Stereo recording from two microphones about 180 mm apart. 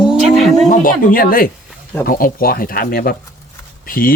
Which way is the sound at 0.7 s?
50° left (ahead or behind).